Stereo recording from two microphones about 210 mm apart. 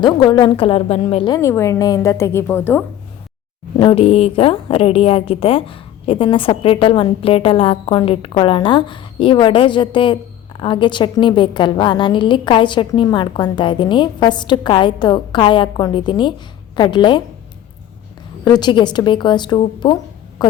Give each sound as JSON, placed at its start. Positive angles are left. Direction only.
{"t": 0.0, "sound": "a woman's voice", "side_deg": 25}
{"t": 3.8, "sound": "a woman's voice", "side_deg": 25}
{"t": 18.4, "sound": "a woman's voice", "side_deg": 20}
{"t": 20.4, "sound": "a sound", "side_deg": 20}